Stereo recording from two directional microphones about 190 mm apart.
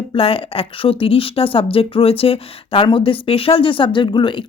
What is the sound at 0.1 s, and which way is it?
A woman's voice, 30° left (ahead or behind).